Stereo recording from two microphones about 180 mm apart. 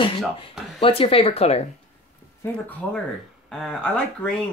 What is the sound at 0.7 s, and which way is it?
Speech, 30° left (ahead or behind).